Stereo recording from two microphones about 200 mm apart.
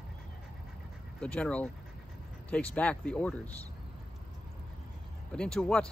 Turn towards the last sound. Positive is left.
turn(degrees=5)  # may be behind; listen again after turning